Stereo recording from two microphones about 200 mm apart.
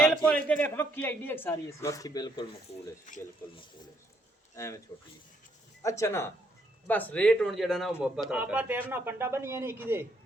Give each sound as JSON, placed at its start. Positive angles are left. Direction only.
{"t": 0.0, "sound": "a man's voice", "side_deg": 5}
{"t": 5.8, "sound": "a man's voice", "side_deg": 15}